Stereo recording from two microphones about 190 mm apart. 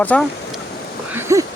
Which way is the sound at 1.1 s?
15° right (ahead or behind).